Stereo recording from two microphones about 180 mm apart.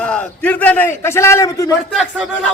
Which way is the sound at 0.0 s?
5° left (ahead or behind).